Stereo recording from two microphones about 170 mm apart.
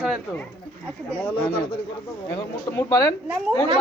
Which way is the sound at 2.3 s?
15° left (ahead or behind).